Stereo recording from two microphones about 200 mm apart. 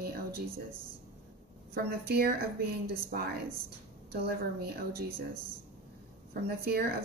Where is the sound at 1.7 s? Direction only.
50° right (ahead or behind).